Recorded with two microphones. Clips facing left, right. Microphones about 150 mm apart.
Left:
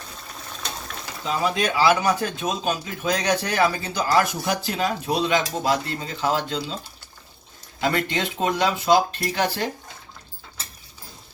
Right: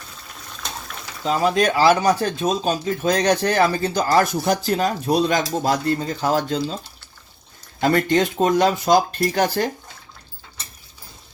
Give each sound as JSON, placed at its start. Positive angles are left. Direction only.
{"t": 1.3, "sound": "speech", "side_deg": -40}
{"t": 7.8, "sound": "speech", "side_deg": -45}